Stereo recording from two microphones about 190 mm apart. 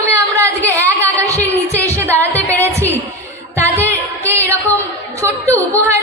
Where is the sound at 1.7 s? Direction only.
15° right (ahead or behind).